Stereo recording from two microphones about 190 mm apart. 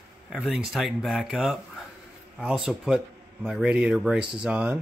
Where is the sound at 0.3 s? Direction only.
5° right (ahead or behind).